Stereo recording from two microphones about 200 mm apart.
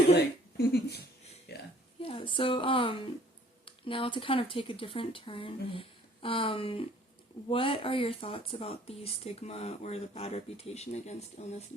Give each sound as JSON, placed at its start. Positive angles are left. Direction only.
{"t": 0.2, "sound": "a woman's voice", "side_deg": 55}
{"t": 2.0, "sound": "speech", "side_deg": 25}